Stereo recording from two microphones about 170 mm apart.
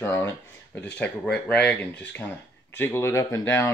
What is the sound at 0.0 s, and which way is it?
Speech, 15° left (ahead or behind).